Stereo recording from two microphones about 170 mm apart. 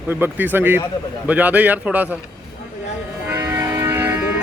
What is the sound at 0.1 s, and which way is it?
A man's voice, 10° right (ahead or behind).